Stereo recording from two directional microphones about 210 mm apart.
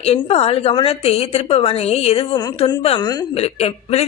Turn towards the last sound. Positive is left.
turn(degrees=30)  # may be behind; listen again after turning